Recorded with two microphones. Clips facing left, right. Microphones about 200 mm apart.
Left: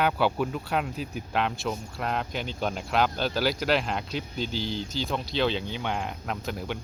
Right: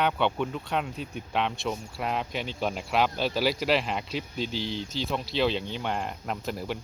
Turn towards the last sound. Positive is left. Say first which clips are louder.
# even
turn(degrees=0)  # may be behind; listen again after turning